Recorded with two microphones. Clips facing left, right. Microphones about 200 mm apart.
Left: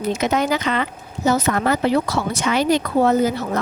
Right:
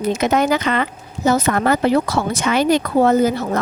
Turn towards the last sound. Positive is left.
turn(degrees=-50)  # may be behind; listen again after turning